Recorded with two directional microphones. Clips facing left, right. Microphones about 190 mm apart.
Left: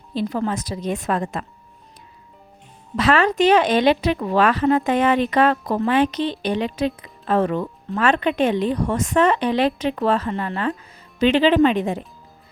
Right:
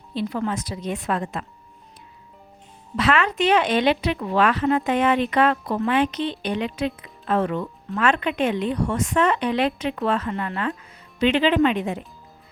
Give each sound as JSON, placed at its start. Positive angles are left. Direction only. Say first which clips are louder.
{"t": 0.1, "sound": "speech", "louder": "left 2 dB", "side_deg": 40}
{"t": 2.9, "sound": "speech", "louder": "left 3 dB", "side_deg": 40}